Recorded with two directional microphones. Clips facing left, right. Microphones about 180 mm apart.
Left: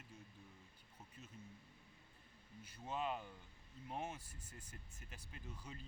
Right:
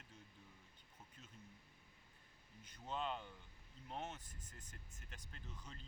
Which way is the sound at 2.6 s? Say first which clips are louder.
Left 1 dB; 10° left (ahead or behind).